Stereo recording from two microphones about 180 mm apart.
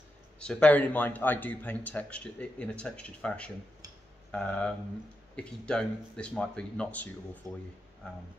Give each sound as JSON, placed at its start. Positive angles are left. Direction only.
{"t": 0.4, "sound": "speech", "side_deg": 5}
{"t": 7.4, "sound": "speech", "side_deg": -20}